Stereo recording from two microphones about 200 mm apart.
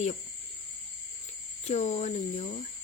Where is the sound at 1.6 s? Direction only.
30° left (ahead or behind).